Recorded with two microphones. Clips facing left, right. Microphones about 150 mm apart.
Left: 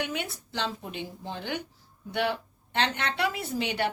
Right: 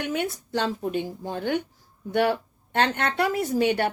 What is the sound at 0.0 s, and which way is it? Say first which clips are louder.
Speech: right 5 dB; 45° right (ahead or behind).